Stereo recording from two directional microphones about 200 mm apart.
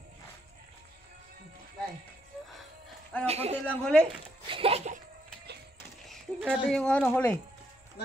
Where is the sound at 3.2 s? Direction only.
30° right (ahead or behind).